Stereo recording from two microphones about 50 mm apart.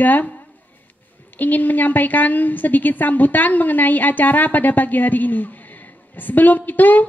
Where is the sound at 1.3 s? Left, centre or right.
Left.